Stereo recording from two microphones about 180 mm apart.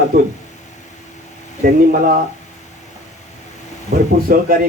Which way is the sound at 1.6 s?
50° right (ahead or behind).